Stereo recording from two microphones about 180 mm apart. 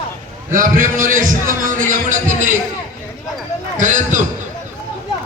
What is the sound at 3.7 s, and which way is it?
Speech, 45° right (ahead or behind).